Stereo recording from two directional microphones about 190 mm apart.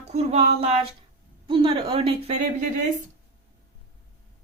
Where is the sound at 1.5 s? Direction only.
30° right (ahead or behind).